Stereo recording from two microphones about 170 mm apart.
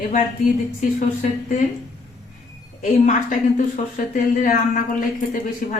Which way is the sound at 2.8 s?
50° left (ahead or behind).